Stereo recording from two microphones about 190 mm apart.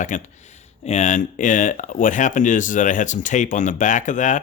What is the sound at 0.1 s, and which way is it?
Speech, 40° left (ahead or behind).